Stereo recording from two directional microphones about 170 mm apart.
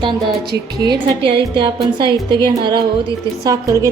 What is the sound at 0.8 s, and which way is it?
A woman's voice, 30° right (ahead or behind).